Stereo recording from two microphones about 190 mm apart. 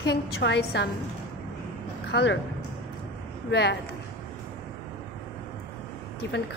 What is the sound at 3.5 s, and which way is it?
Speech, 60° left (ahead or behind).